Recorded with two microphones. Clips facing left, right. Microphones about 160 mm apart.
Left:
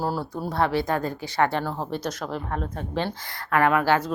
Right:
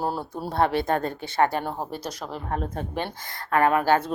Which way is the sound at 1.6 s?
20° right (ahead or behind).